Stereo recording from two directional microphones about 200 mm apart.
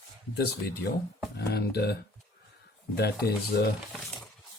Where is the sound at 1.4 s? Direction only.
55° left (ahead or behind).